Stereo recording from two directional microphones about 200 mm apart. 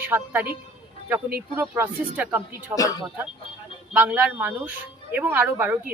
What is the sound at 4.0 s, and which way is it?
Speech, 5° right (ahead or behind).